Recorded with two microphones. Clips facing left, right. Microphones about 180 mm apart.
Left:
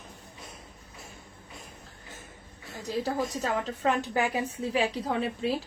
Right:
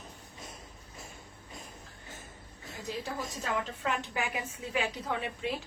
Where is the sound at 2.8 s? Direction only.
40° left (ahead or behind).